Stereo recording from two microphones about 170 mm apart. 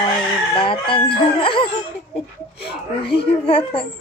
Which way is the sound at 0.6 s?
30° left (ahead or behind).